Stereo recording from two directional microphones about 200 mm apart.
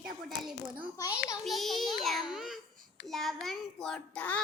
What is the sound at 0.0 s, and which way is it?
Speech, centre (ahead or behind).